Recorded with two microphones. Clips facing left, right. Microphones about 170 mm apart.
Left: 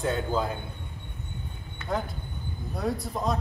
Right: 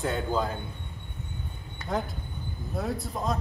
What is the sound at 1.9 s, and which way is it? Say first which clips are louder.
Speech: even; centre (ahead or behind).